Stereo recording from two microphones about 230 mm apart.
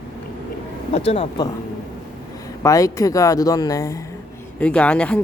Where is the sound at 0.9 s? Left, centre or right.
Left.